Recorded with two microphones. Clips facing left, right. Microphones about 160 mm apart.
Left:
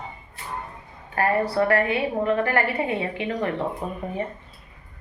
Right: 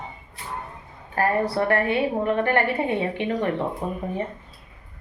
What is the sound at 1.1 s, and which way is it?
A woman's voice, 30° right (ahead or behind).